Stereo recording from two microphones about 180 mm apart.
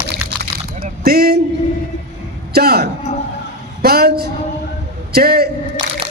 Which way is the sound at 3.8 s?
60° right (ahead or behind).